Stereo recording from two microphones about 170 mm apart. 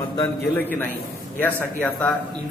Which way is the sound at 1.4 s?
10° left (ahead or behind).